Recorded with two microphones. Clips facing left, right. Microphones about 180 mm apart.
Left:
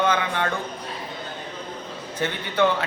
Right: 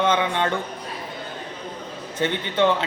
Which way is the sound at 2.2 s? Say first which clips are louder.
Right 1 dB; 20° right (ahead or behind).